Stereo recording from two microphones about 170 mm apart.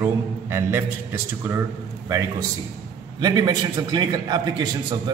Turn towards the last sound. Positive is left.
turn(degrees=-25)  # may be behind; listen again after turning